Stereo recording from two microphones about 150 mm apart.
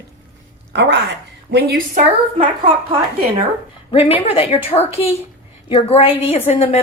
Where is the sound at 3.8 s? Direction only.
40° left (ahead or behind).